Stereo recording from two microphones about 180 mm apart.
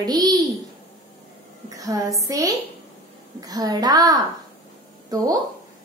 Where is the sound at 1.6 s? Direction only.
20° right (ahead or behind).